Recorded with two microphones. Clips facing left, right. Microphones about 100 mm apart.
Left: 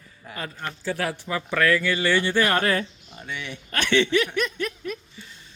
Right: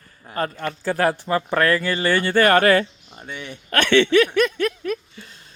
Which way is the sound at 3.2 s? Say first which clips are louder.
Right 1 dB; 40° right (ahead or behind).